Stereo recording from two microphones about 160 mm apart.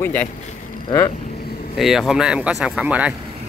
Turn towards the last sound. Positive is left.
turn(degrees=-10)  # may be behind; listen again after turning